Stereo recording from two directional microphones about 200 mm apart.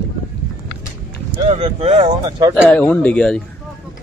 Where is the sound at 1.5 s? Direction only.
30° right (ahead or behind).